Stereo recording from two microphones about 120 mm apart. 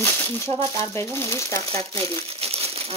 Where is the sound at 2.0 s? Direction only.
55° right (ahead or behind).